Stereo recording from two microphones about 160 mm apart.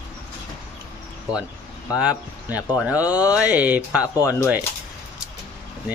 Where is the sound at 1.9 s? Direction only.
5° right (ahead or behind).